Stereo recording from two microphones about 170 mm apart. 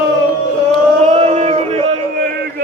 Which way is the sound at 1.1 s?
40° right (ahead or behind).